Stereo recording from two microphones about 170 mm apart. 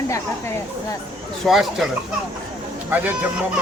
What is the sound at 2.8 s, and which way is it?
Speech, 10° right (ahead or behind).